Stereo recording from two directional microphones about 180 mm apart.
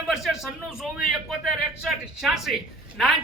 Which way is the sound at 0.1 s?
Centre (ahead or behind).